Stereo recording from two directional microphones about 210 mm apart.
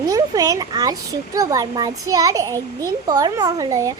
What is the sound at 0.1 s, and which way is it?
A child's voice, 15° right (ahead or behind).